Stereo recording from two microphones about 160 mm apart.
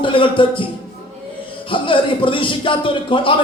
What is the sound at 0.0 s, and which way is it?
Speech, 30° left (ahead or behind).